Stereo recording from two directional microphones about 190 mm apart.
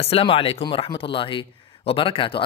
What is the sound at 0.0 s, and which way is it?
Speech, 30° left (ahead or behind).